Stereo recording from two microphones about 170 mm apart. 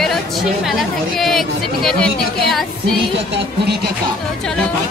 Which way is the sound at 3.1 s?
85° right.